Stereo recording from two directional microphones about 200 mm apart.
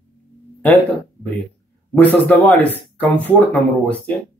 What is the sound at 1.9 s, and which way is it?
Speech, 10° left (ahead or behind).